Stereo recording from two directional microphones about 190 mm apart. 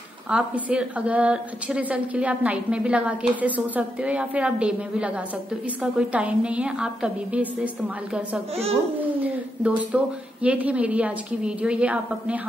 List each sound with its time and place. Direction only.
0.3 s a woman's voice: 5° right (ahead or behind)
9.6 s a woman's voice: 5° right (ahead or behind)